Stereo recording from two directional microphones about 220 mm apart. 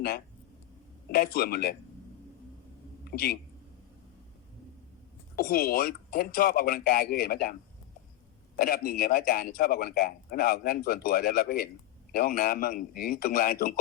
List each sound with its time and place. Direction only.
1.1 s speech: 45° left (ahead or behind)
3.1 s speech: 45° left (ahead or behind)
5.4 s a man's voice: 40° left (ahead or behind)
8.5 s a man's voice: 40° left (ahead or behind)